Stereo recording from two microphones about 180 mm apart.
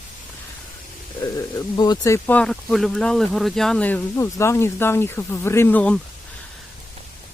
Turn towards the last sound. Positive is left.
turn(degrees=10)  # may be behind; listen again after turning